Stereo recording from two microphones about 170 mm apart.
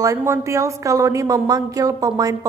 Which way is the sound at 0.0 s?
20° right (ahead or behind).